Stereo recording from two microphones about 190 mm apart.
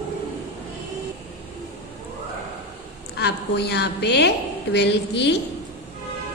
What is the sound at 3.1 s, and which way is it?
A woman's voice, 60° left (ahead or behind).